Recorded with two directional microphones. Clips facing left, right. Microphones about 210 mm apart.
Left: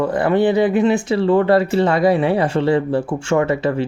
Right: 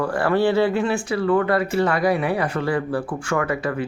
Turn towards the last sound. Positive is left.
turn(degrees=25)  # may be behind; listen again after turning